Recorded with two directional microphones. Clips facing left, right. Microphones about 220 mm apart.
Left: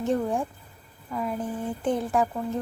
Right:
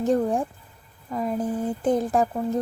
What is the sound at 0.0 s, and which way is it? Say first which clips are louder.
Speech: right 4 dB; 40° right (ahead or behind).